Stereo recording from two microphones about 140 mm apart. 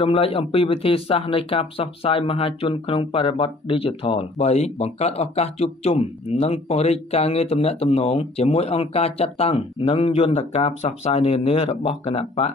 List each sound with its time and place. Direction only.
0.0 s speech: 40° left (ahead or behind)